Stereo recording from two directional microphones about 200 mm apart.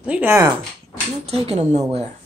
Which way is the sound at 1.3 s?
35° right (ahead or behind).